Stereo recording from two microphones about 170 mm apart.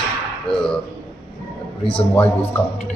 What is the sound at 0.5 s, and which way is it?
Ping, 5° left (ahead or behind).